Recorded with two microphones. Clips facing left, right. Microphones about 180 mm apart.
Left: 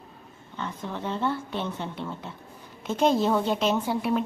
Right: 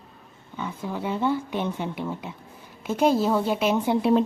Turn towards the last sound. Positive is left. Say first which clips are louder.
# right 2 dB
turn(degrees=-15)  # may be behind; listen again after turning